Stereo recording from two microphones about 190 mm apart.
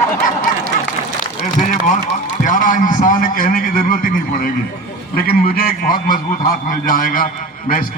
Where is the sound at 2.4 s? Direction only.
45° left (ahead or behind).